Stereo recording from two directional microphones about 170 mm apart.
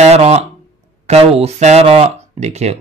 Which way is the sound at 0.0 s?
40° right (ahead or behind).